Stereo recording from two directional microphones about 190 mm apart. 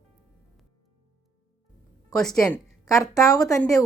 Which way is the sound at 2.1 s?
Centre (ahead or behind).